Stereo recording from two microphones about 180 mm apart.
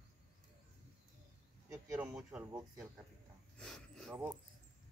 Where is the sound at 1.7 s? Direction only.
15° right (ahead or behind).